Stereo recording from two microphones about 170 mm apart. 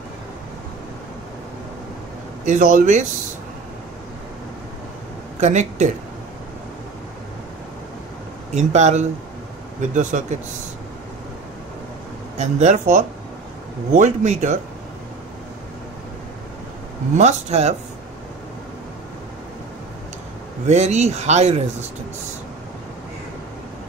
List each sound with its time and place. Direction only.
2.4 s speech: 45° right (ahead or behind)
5.4 s speech: 45° right (ahead or behind)
8.5 s speech: 45° right (ahead or behind)
12.4 s speech: 45° right (ahead or behind)
17.2 s speech: 40° right (ahead or behind)
20.6 s speech: 40° right (ahead or behind)